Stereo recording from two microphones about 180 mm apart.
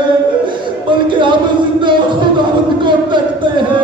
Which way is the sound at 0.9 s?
25° right (ahead or behind).